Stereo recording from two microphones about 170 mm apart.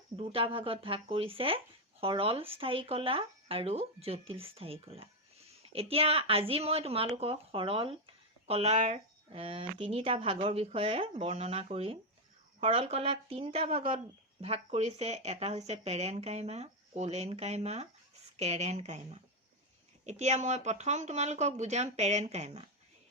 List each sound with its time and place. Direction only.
0.2 s speech: 35° right (ahead or behind)